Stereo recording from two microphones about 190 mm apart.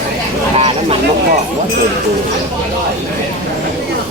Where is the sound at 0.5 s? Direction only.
30° right (ahead or behind).